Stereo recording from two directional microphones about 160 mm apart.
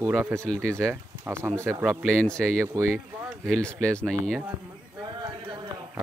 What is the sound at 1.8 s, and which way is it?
Speech, 5° right (ahead or behind).